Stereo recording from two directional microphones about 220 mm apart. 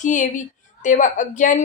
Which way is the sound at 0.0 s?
35° left (ahead or behind).